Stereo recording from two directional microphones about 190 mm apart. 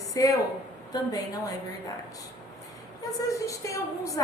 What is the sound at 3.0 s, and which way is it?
A woman's voice, 20° left (ahead or behind).